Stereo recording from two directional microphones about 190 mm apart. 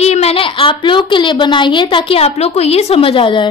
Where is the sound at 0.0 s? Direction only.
35° left (ahead or behind).